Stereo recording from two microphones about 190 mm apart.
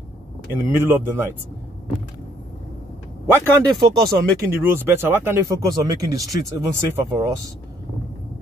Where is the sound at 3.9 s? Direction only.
15° right (ahead or behind).